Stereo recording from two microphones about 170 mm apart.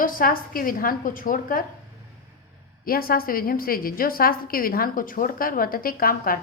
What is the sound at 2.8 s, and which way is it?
A woman's voice, 60° left (ahead or behind).